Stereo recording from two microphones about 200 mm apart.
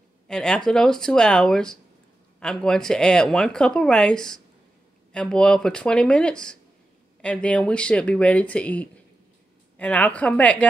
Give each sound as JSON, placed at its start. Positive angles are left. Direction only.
{"t": 0.3, "sound": "speech", "side_deg": 5}